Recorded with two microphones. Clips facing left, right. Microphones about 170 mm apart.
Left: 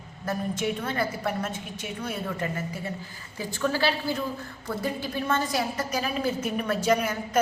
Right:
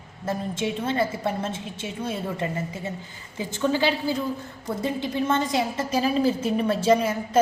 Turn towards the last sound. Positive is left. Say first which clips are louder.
# right 4 dB
turn(degrees=-25)  # may be behind; listen again after turning